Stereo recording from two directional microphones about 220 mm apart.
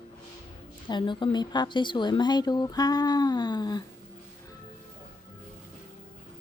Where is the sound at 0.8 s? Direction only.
20° left (ahead or behind).